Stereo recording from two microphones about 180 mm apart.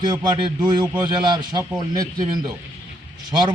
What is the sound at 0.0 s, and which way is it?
A man's voice, 25° right (ahead or behind).